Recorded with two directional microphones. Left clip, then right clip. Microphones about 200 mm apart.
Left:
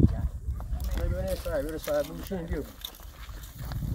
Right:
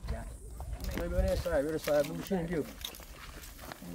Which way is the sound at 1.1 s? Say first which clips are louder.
Even; 10° left (ahead or behind).